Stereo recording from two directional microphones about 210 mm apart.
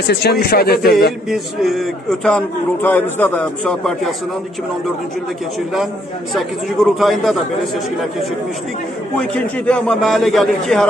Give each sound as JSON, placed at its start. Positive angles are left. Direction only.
{"t": 0.1, "sound": "speech", "side_deg": 50}
{"t": 1.3, "sound": "a man's voice", "side_deg": 0}
{"t": 6.3, "sound": "a man's voice", "side_deg": 0}
{"t": 9.3, "sound": "a man's voice", "side_deg": 5}